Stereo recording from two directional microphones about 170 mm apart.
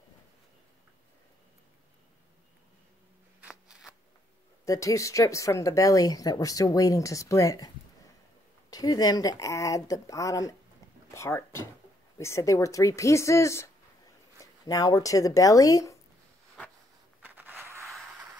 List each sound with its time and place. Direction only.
3.3 s a sound: 5° right (ahead or behind)
4.6 s speech: 20° left (ahead or behind)
17.2 s scrape: 10° right (ahead or behind)